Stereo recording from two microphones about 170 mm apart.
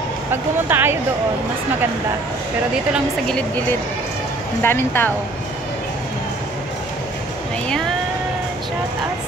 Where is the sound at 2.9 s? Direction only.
5° left (ahead or behind).